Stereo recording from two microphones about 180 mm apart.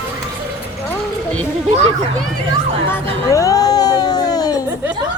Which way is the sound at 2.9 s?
15° left (ahead or behind).